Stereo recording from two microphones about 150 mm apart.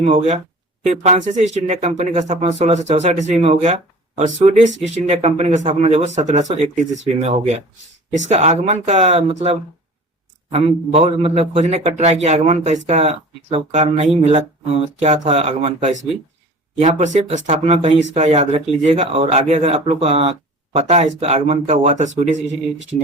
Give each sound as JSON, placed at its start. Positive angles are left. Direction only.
{"t": 0.0, "sound": "speech", "side_deg": -40}